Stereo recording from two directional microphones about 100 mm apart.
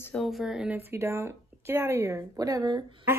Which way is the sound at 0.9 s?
25° right (ahead or behind).